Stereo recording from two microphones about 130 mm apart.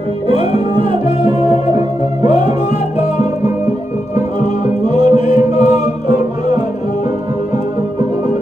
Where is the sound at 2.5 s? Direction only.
55° left (ahead or behind).